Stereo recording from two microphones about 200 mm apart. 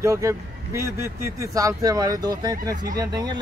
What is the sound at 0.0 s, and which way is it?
Speech, 15° right (ahead or behind).